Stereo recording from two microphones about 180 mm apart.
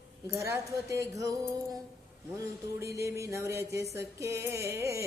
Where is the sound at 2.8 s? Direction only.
15° right (ahead or behind).